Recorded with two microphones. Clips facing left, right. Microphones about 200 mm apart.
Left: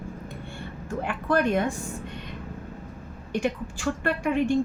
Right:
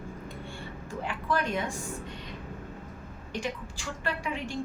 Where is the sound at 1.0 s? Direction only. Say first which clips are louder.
Left 6 dB; 60° left (ahead or behind).